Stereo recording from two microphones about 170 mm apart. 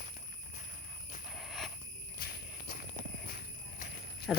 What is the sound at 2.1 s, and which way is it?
Jingle bell, 60° left (ahead or behind).